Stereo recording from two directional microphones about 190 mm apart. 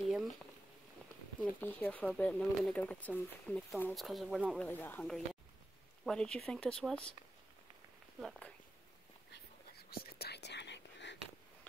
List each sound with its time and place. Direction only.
1.4 s speech: 10° left (ahead or behind)
4.6 s speech: 10° left (ahead or behind)
8.2 s speech: 5° left (ahead or behind)
9.8 s whispering: 55° left (ahead or behind)